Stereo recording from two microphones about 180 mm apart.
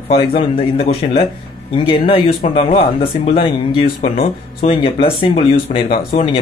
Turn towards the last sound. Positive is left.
turn(degrees=30)  # may be behind; listen again after turning